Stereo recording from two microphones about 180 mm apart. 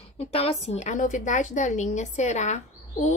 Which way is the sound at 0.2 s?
35° left (ahead or behind).